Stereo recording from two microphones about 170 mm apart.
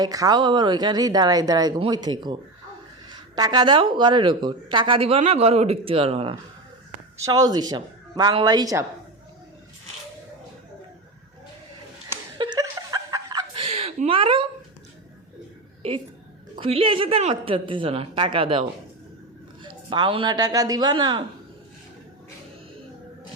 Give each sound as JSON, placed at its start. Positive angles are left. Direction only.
{"t": 0.0, "sound": "speech", "side_deg": -20}
{"t": 7.2, "sound": "speech", "side_deg": -20}
{"t": 12.4, "sound": "chuckle", "side_deg": -25}
{"t": 16.6, "sound": "speech", "side_deg": -35}
{"t": 19.6, "sound": "speech", "side_deg": -30}